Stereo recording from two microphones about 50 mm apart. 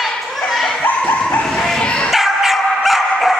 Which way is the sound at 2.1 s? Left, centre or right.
Centre.